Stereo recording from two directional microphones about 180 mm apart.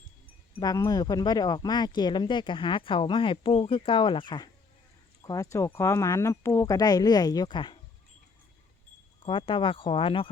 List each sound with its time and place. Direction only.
0.6 s speech: 20° left (ahead or behind)
9.2 s speech: 30° left (ahead or behind)